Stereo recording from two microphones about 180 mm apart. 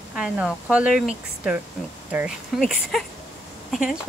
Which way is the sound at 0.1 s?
5° right (ahead or behind).